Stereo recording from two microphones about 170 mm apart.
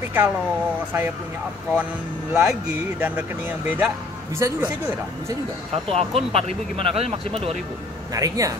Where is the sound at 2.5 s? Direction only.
10° right (ahead or behind).